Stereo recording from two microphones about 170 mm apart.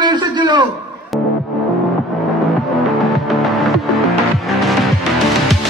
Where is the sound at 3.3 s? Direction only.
Centre (ahead or behind).